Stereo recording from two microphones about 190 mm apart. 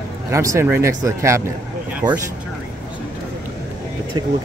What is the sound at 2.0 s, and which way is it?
Speech, 40° right (ahead or behind).